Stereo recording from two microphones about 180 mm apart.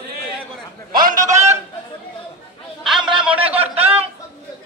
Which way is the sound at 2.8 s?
5° right (ahead or behind).